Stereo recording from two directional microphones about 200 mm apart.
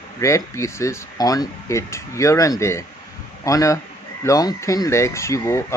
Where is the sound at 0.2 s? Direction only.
15° left (ahead or behind).